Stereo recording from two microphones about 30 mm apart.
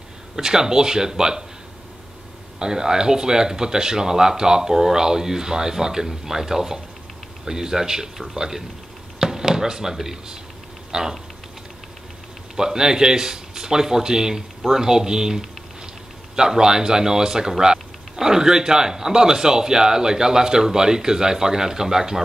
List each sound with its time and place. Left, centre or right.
0.4 s speech: centre
2.6 s speech: right
12.5 s speech: right